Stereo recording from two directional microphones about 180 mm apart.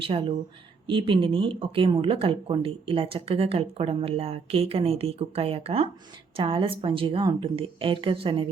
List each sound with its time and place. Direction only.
0.0 s a woman's voice: 30° right (ahead or behind)